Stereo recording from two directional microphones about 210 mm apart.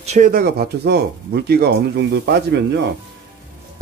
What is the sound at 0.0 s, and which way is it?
Speech, 35° right (ahead or behind).